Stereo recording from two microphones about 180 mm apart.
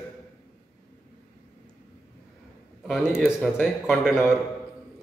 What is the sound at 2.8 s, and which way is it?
A man's voice, centre (ahead or behind).